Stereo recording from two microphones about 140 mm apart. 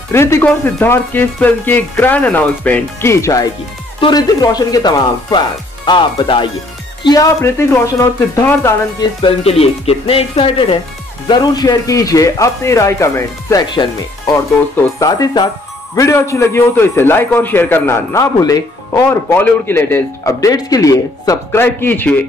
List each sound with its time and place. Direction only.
0.1 s a man's voice: 20° left (ahead or behind)
7.4 s a man's voice: 20° left (ahead or behind)
9.2 s a man's voice: 45° left (ahead or behind); by 20.3 s 15° left (ahead or behind)
20.3 s a man's voice: 25° left (ahead or behind)